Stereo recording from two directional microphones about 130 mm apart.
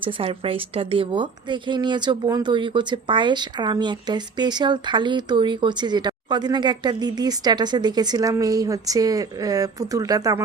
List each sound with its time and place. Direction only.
0.0 s speech: 45° right (ahead or behind); by 10.4 s 30° right (ahead or behind)